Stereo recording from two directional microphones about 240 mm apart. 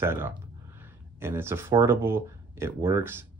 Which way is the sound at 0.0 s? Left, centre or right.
Centre.